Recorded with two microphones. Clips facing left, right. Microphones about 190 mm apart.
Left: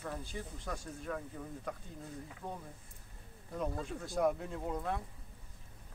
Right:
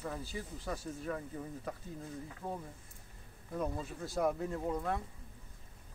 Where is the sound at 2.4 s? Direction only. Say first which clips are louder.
Right 4 dB; 5° right (ahead or behind).